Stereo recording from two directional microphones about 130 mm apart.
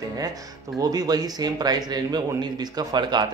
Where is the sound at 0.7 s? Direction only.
30° right (ahead or behind).